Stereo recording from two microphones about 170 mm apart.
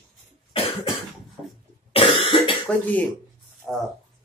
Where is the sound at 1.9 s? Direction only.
30° left (ahead or behind).